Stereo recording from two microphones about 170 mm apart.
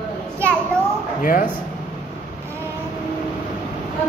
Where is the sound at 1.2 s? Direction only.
55° left (ahead or behind).